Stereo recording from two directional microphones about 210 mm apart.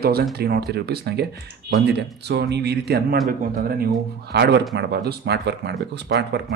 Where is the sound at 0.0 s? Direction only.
50° right (ahead or behind).